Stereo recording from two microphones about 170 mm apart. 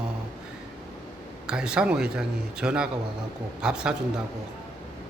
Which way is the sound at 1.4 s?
5° right (ahead or behind).